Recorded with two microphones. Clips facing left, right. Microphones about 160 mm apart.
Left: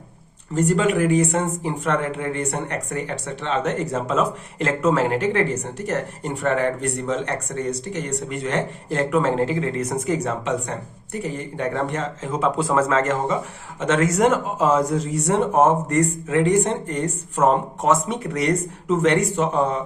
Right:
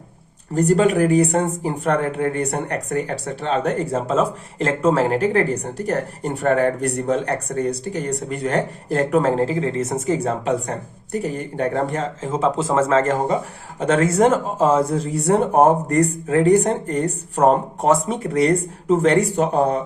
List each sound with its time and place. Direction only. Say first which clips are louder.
0.5 s speech: right 3 dB; 40° right (ahead or behind)